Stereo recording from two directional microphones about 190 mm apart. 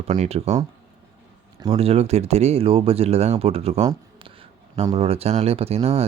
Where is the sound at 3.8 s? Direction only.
30° right (ahead or behind).